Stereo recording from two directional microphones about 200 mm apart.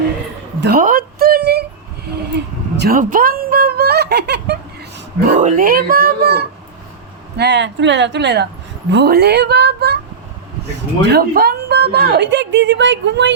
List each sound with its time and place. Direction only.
0.6 s a sound: 45° right (ahead or behind)
2.3 s fowl: 55° right (ahead or behind)
5.2 s a woman's voice: 40° right (ahead or behind); by 13.3 s 60° right (ahead or behind)